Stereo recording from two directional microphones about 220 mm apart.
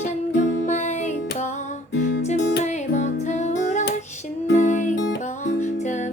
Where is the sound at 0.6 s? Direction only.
30° left (ahead or behind).